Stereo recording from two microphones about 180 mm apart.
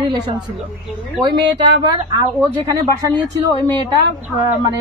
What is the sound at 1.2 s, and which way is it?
A woman's voice, 25° right (ahead or behind).